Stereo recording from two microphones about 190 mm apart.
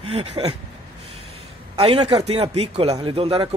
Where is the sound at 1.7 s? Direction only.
35° right (ahead or behind).